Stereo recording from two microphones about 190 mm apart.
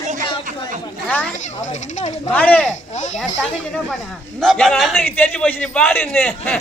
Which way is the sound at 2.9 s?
40° left (ahead or behind).